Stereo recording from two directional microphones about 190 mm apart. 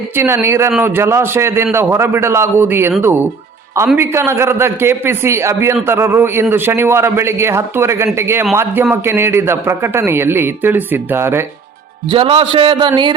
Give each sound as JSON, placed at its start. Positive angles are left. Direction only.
{"t": 0.2, "sound": "a man's voice", "side_deg": -10}
{"t": 12.1, "sound": "a man's voice", "side_deg": -30}